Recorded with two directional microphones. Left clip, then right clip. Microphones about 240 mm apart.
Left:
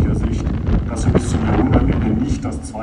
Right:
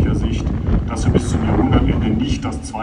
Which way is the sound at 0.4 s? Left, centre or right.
Right.